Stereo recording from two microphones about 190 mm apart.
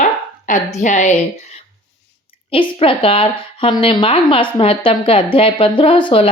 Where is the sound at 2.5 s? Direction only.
30° left (ahead or behind).